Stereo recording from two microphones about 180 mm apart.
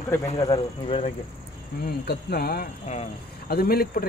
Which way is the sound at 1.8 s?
60° left (ahead or behind).